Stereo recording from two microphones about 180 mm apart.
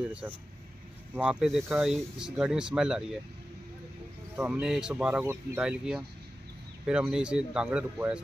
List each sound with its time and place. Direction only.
0.2 s speech: 10° right (ahead or behind)
4.4 s speech: 5° right (ahead or behind)